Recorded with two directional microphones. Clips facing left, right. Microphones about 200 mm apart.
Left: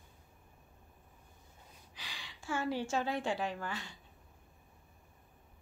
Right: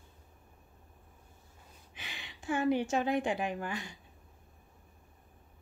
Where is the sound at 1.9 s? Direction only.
20° right (ahead or behind).